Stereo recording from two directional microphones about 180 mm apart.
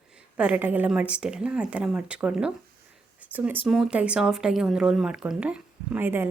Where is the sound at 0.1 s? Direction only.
5° right (ahead or behind).